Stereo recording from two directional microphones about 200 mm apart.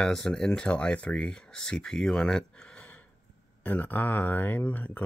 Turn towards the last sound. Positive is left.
turn(degrees=10)  # may be behind; listen again after turning